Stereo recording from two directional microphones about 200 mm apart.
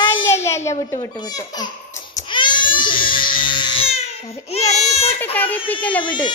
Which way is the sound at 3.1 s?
25° left (ahead or behind).